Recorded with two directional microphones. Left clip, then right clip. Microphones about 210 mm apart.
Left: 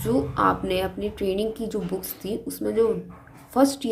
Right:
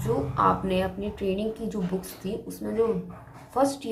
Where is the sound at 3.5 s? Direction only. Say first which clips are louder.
Left 3 dB; 40° left (ahead or behind).